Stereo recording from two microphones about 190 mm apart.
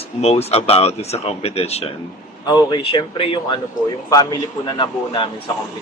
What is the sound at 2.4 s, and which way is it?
A man's voice, 20° left (ahead or behind).